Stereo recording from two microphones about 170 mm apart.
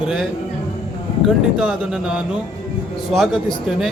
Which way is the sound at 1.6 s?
5° right (ahead or behind).